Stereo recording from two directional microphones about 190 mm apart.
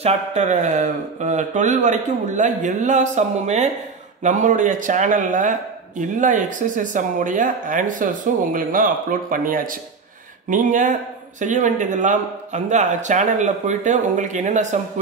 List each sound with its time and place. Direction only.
0.0 s a man's voice: 35° right (ahead or behind)